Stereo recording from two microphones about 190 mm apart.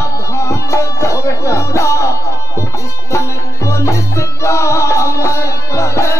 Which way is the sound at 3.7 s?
15° left (ahead or behind).